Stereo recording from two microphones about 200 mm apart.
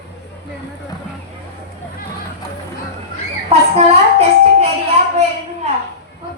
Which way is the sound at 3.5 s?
30° right (ahead or behind).